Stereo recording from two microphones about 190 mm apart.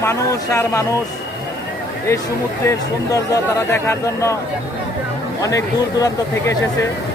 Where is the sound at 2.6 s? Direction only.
15° left (ahead or behind).